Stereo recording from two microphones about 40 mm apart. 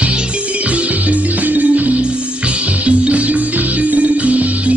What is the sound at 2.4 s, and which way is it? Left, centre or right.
Music, right.